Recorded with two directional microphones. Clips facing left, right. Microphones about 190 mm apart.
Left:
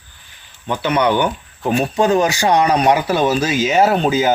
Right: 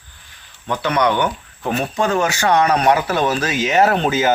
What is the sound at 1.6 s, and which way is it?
Speech, 15° left (ahead or behind).